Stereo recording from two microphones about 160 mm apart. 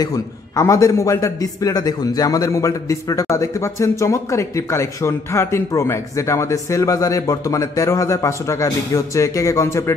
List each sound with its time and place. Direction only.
0.0 s a man's voice: 20° left (ahead or behind)